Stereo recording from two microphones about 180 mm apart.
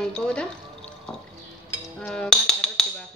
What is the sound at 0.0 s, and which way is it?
Music, 5° left (ahead or behind).